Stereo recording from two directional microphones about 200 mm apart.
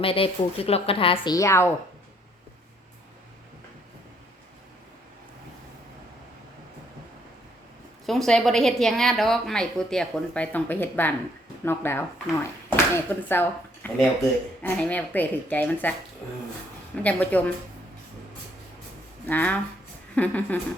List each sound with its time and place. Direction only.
0.0 s a woman's voice: 30° left (ahead or behind)
8.0 s a woman's voice: centre (ahead or behind)
17.0 s a woman's voice: 5° left (ahead or behind)
19.2 s a woman's voice: 10° left (ahead or behind)